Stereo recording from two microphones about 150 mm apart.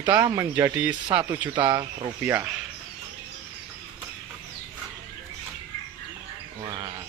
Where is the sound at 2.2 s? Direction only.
15° right (ahead or behind).